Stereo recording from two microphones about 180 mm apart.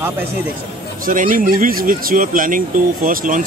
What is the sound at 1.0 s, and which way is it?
Speech, 50° right (ahead or behind).